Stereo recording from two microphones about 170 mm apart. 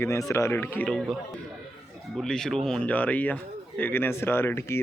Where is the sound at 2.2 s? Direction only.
5° left (ahead or behind).